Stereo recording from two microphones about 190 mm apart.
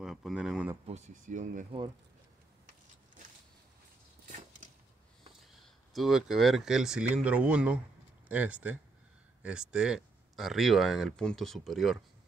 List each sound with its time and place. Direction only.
0.0 s a sound: 5° right (ahead or behind)
0.8 s speech: 35° right (ahead or behind)
5.9 s speech: centre (ahead or behind)